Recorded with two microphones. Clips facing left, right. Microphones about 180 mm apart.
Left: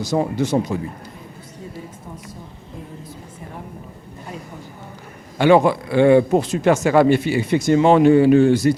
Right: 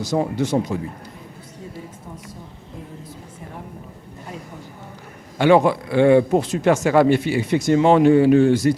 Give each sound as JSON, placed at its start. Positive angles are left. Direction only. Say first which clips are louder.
{"t": 0.1, "sound": "speech", "louder": "left 1 dB", "side_deg": 30}
{"t": 5.5, "sound": "speech", "louder": "left 1 dB", "side_deg": 20}